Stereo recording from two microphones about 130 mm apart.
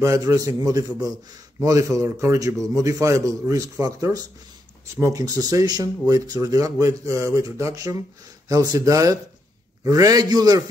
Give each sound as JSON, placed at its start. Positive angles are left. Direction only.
{"t": 0.0, "sound": "speech", "side_deg": -25}